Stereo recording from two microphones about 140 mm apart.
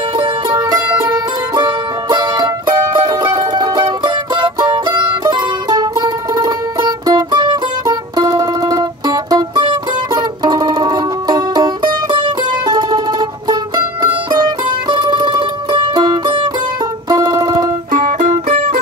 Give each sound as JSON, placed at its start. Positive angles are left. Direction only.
{"t": 0.2, "sound": "music", "side_deg": -30}
{"t": 14.0, "sound": "music", "side_deg": -35}
{"t": 17.9, "sound": "music", "side_deg": -65}